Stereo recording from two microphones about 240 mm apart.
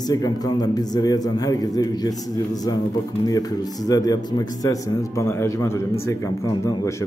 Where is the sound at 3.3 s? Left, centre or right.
Centre.